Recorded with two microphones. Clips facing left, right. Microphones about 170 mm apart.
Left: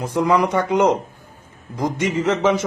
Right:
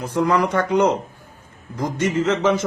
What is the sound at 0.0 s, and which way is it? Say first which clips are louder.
A man's voice: left 1 dB; 15° left (ahead or behind).